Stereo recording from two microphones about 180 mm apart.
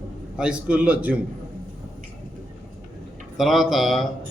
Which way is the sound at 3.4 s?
Centre (ahead or behind).